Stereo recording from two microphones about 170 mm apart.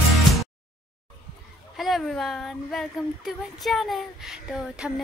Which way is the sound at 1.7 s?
Centre (ahead or behind).